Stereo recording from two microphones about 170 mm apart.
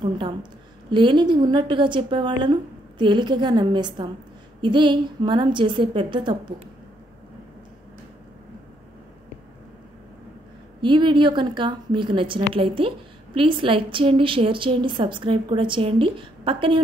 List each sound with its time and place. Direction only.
0.0 s a woman's voice: 30° right (ahead or behind)
10.8 s a woman's voice: 30° right (ahead or behind)